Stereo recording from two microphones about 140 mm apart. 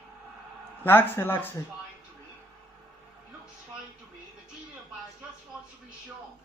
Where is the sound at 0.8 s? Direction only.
15° left (ahead or behind).